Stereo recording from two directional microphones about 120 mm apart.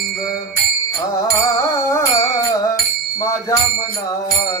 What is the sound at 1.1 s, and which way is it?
Music, 25° left (ahead or behind).